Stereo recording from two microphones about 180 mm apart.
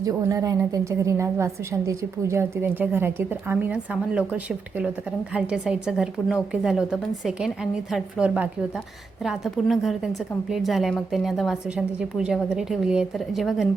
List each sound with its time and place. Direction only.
0.0 s a woman's voice: 20° right (ahead or behind); by 13.7 s centre (ahead or behind)